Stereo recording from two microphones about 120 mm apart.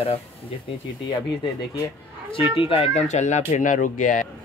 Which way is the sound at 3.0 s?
75° left (ahead or behind).